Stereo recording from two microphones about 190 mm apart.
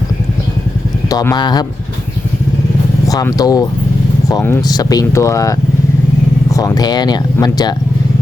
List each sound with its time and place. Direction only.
1.1 s speech: 20° left (ahead or behind)
3.1 s speech: 20° left (ahead or behind)